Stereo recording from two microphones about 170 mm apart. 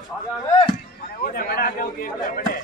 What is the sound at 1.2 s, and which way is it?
A man's voice, 60° left (ahead or behind).